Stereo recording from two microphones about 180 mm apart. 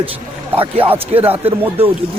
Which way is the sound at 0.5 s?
30° right (ahead or behind).